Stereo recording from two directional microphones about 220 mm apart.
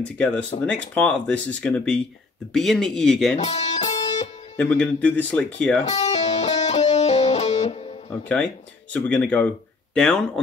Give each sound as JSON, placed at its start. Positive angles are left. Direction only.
{"t": 0.0, "sound": "speech", "side_deg": 5}
{"t": 3.3, "sound": "music", "side_deg": 30}
{"t": 4.6, "sound": "speech", "side_deg": 5}
{"t": 6.0, "sound": "music", "side_deg": 30}
{"t": 8.9, "sound": "speech", "side_deg": 5}